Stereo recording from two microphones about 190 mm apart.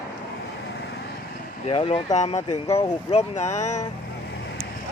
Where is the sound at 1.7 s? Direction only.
30° left (ahead or behind).